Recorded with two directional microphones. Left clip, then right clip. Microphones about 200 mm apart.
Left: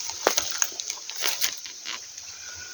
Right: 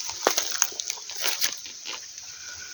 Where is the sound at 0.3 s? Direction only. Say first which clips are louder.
Even; 35° right (ahead or behind).